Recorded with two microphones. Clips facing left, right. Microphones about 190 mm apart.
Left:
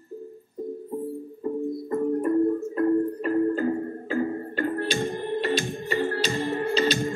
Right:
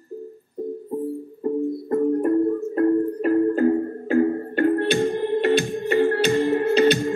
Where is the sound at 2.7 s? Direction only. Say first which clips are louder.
Right 5 dB; 55° right (ahead or behind).